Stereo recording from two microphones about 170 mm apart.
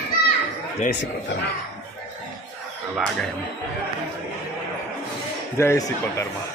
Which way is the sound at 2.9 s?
5° left (ahead or behind).